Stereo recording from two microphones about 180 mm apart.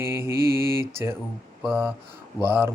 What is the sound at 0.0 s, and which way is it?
Mantra, 15° right (ahead or behind).